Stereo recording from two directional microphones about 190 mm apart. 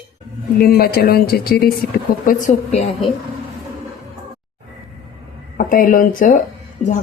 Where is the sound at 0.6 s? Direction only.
50° left (ahead or behind); by 3.1 s 35° left (ahead or behind).